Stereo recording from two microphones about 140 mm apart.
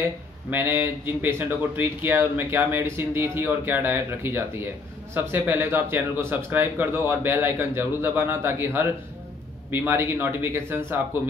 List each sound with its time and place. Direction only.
0.5 s speech: 15° right (ahead or behind)